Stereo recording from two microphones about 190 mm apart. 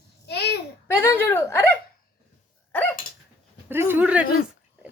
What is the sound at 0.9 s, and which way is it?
Hiccup, 10° left (ahead or behind).